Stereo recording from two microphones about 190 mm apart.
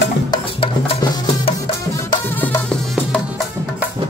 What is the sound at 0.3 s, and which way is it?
Music, 25° left (ahead or behind).